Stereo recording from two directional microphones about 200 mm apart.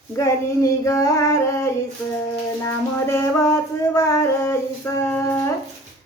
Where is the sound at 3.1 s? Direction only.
15° left (ahead or behind).